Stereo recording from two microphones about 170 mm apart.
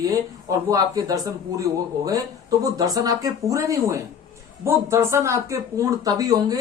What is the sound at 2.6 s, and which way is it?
Speech, 20° right (ahead or behind).